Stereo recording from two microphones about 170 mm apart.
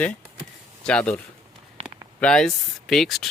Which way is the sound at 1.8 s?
35° right (ahead or behind).